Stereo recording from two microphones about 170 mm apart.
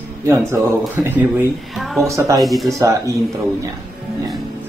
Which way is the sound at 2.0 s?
20° right (ahead or behind).